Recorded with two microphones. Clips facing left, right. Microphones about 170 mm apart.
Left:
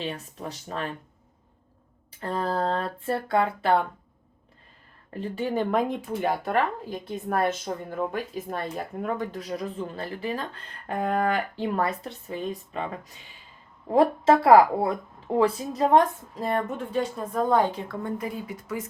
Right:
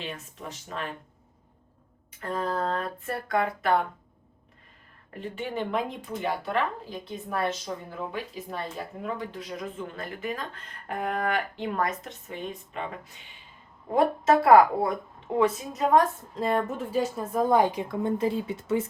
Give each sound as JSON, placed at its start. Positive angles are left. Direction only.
{"t": 0.0, "sound": "speech", "side_deg": 35}
{"t": 2.2, "sound": "speech", "side_deg": 30}
{"t": 5.1, "sound": "speech", "side_deg": 35}
{"t": 16.3, "sound": "a woman's voice", "side_deg": 0}